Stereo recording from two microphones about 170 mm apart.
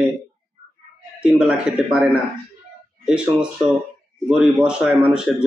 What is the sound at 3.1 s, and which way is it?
Speech, 5° right (ahead or behind).